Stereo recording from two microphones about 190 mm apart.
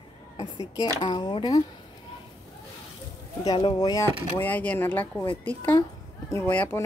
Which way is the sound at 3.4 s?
25° left (ahead or behind).